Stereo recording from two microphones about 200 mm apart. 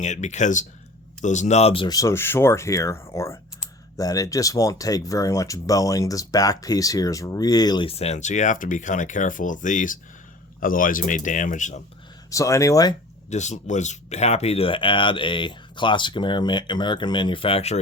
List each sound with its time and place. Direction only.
0.0 s speech: 35° left (ahead or behind)
12.3 s speech: 15° left (ahead or behind)
13.3 s speech: 35° left (ahead or behind)